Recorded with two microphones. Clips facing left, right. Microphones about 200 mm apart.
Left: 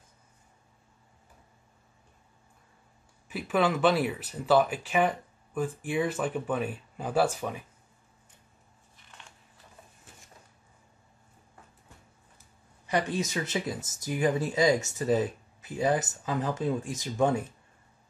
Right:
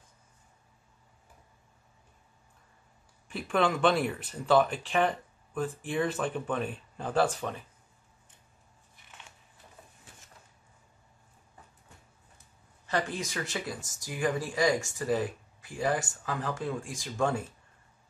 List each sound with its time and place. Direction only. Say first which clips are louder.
3.3 s speech: left 1 dB; 5° left (ahead or behind)
12.8 s speech: left 3 dB; 15° left (ahead or behind)